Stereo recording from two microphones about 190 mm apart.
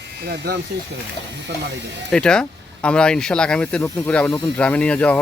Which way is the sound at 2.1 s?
5° left (ahead or behind).